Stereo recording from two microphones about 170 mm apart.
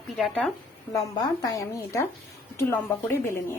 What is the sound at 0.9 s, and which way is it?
A woman's voice, 20° left (ahead or behind).